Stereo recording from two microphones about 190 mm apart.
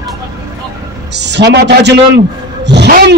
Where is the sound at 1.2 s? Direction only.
65° right (ahead or behind).